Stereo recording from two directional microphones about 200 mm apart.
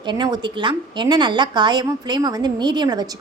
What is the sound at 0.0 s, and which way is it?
A woman's voice, 20° right (ahead or behind).